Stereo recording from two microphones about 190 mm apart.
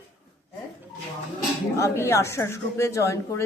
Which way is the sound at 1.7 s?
15° left (ahead or behind).